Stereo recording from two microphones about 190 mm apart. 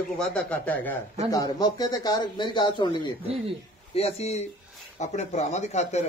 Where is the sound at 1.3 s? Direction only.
20° left (ahead or behind).